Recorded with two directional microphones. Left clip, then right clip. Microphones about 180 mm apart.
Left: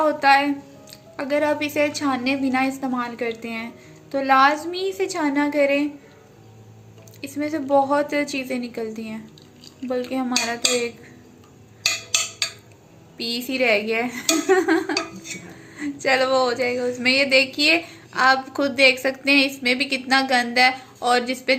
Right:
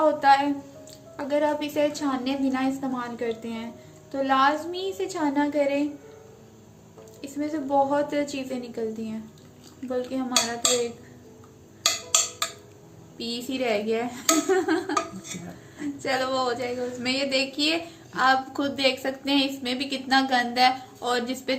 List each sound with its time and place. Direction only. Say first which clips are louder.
0.0 s a woman's voice: left 2 dB; 30° left (ahead or behind)
7.2 s speech: left 4 dB; 30° left (ahead or behind)
13.1 s speech: left 6 dB; 30° left (ahead or behind)